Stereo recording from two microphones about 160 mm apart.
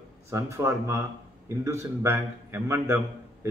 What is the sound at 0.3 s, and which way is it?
A man's voice, 20° right (ahead or behind).